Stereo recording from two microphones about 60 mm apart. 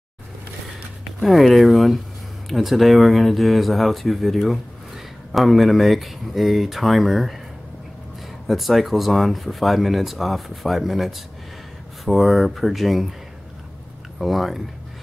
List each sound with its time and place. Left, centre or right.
1.2 s speech: centre
8.5 s speech: centre
14.1 s speech: centre